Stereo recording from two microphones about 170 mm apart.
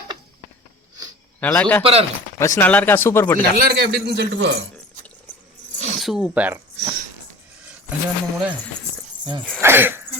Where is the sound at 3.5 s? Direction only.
65° right (ahead or behind); by 4.5 s 85° right.